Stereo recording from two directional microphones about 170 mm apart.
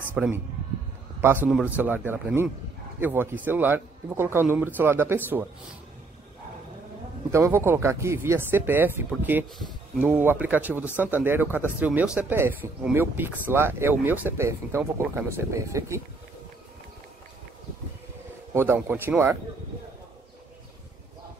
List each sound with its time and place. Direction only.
0.1 s speech: 10° right (ahead or behind)
7.2 s speech: 15° right (ahead or behind)
18.5 s speech: 10° right (ahead or behind)